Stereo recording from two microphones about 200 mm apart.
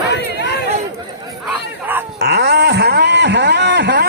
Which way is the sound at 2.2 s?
55° right (ahead or behind).